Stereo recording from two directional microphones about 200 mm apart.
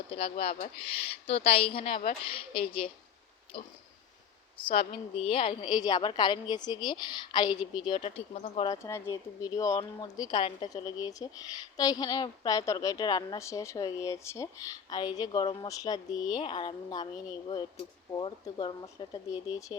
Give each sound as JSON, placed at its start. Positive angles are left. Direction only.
{"t": 0.1, "sound": "speech", "side_deg": 30}
{"t": 8.7, "sound": "speech", "side_deg": 15}